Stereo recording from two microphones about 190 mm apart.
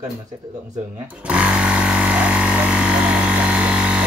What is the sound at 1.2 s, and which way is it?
Chainsaw, 5° right (ahead or behind).